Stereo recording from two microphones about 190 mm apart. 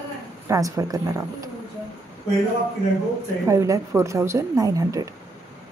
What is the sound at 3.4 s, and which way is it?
A woman's voice, 15° right (ahead or behind).